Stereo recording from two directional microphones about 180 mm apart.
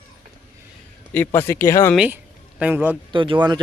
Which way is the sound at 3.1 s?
25° right (ahead or behind).